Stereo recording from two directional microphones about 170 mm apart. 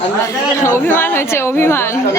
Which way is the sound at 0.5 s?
15° left (ahead or behind).